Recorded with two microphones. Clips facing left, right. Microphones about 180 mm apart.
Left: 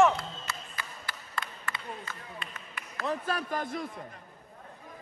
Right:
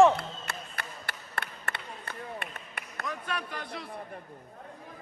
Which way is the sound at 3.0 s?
35° left (ahead or behind).